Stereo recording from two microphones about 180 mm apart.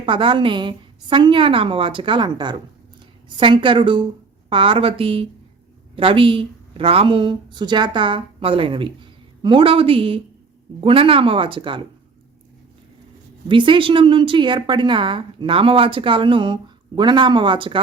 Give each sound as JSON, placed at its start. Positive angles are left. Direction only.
{"t": 0.0, "sound": "a woman's voice", "side_deg": -30}
{"t": 13.5, "sound": "a woman's voice", "side_deg": -25}